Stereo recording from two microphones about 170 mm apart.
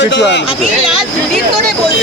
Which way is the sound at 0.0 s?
90° left.